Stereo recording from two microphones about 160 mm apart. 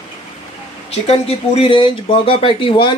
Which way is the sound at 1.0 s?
40° left (ahead or behind).